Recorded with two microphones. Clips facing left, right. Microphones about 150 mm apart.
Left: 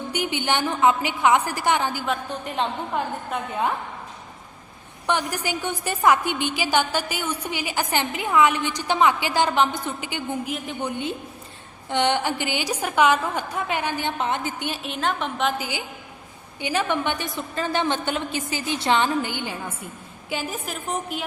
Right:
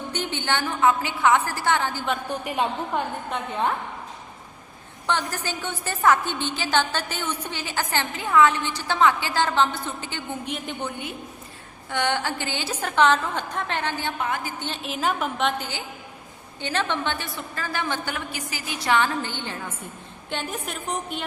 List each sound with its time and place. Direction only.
0.1 s a woman's voice: 10° left (ahead or behind)
2.3 s a woman's voice: 10° right (ahead or behind)
5.0 s a woman's voice: 15° left (ahead or behind)
11.9 s a woman's voice: 20° left (ahead or behind)
14.7 s a woman's voice: centre (ahead or behind)